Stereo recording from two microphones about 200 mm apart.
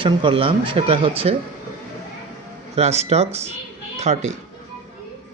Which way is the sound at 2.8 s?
30° right (ahead or behind).